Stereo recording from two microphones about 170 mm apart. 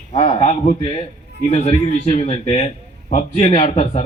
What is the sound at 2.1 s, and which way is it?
Speech, 40° left (ahead or behind).